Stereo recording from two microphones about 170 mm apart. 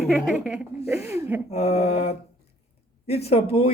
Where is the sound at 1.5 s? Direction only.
40° left (ahead or behind).